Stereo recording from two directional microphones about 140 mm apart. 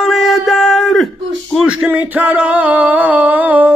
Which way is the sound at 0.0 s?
Centre (ahead or behind).